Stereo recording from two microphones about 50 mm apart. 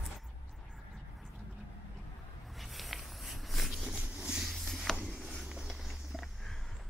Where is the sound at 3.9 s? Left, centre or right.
Right.